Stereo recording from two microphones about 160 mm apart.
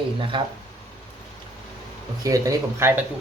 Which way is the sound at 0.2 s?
30° right (ahead or behind).